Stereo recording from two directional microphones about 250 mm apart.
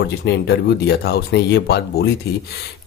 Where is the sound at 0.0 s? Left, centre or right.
Left.